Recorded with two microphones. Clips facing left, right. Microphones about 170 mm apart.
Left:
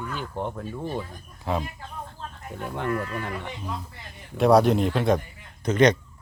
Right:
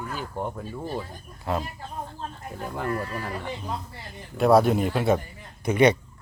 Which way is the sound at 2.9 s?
35° right (ahead or behind).